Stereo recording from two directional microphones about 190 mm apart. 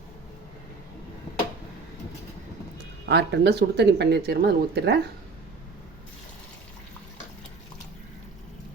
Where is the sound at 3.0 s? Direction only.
65° right (ahead or behind).